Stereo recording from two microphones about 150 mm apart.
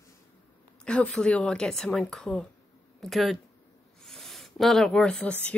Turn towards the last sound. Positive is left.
turn(degrees=5)  # may be behind; listen again after turning